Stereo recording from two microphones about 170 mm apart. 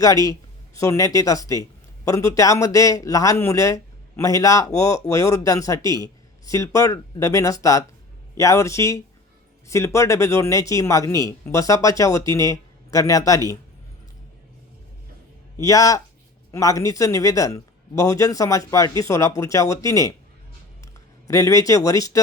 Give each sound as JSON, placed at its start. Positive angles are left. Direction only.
{"t": 0.0, "sound": "a man's voice", "side_deg": 20}
{"t": 15.6, "sound": "a man's voice", "side_deg": 20}
{"t": 21.2, "sound": "a man's voice", "side_deg": 20}